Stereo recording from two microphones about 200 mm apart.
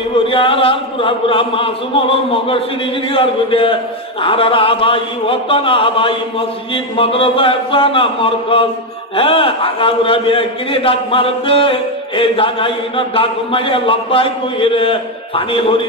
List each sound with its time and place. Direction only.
0.3 s a man's voice: 25° left (ahead or behind)